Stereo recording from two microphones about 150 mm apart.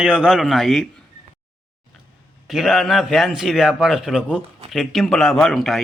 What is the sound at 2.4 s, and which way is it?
A man's voice, centre (ahead or behind).